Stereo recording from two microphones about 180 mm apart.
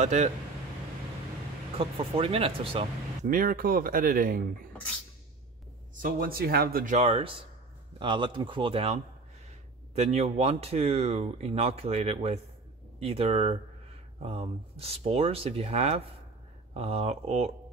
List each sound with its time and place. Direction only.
0.0 s speech: 40° right (ahead or behind)
1.8 s speech: 30° right (ahead or behind)
3.3 s speech: 50° right (ahead or behind)
5.9 s speech: 50° right (ahead or behind); by 17.5 s 35° right (ahead or behind)